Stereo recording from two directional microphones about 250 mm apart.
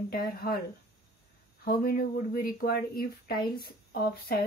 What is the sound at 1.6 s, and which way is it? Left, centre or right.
Speech, left.